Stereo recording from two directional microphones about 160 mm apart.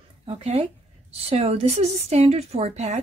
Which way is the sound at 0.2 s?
40° right (ahead or behind).